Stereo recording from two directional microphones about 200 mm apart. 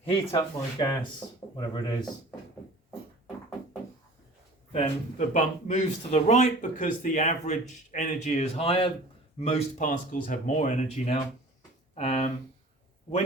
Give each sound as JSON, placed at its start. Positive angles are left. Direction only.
{"t": 0.0, "sound": "speech", "side_deg": 25}
{"t": 4.7, "sound": "speech", "side_deg": 35}